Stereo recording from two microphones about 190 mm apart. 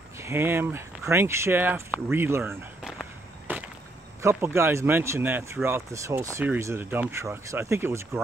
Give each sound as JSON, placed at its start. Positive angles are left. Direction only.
{"t": 0.2, "sound": "speech", "side_deg": -15}
{"t": 3.5, "sound": "a sound", "side_deg": -10}
{"t": 4.2, "sound": "speech", "side_deg": -15}